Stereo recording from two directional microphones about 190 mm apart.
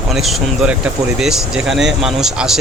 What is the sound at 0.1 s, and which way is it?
Speech, centre (ahead or behind).